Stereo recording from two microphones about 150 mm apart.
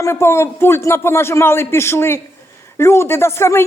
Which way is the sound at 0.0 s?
15° left (ahead or behind).